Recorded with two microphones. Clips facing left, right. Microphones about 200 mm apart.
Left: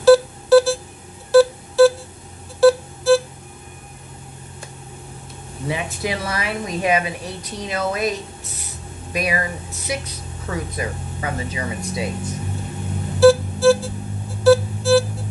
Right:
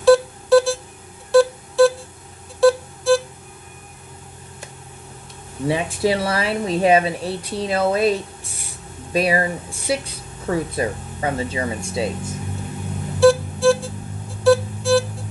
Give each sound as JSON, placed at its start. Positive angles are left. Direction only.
{"t": 0.0, "sound": "a sound", "side_deg": 0}
{"t": 1.3, "sound": "music", "side_deg": 0}
{"t": 5.7, "sound": "speech", "side_deg": -30}
{"t": 13.2, "sound": "music", "side_deg": 0}